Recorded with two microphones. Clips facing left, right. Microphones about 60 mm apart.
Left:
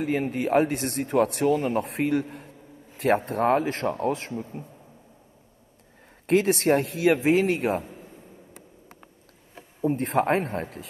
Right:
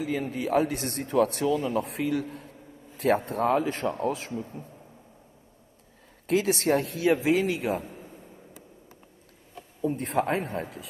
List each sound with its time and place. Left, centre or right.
0.0 s a man's voice: left
2.0 s a man's voice: left
3.1 s a man's voice: left
6.2 s a man's voice: left
7.2 s a man's voice: left
9.6 s speech: left